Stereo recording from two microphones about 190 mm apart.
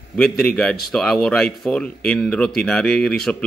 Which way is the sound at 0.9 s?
5° left (ahead or behind).